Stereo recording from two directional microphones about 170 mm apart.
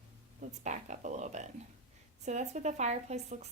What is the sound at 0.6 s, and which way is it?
Speech, 45° right (ahead or behind).